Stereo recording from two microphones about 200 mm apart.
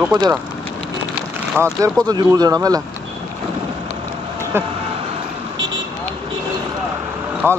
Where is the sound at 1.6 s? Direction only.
5° left (ahead or behind).